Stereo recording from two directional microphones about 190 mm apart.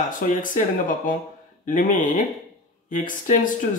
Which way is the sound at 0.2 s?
45° left (ahead or behind).